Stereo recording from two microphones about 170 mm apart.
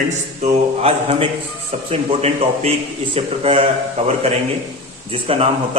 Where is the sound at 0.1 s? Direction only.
40° right (ahead or behind).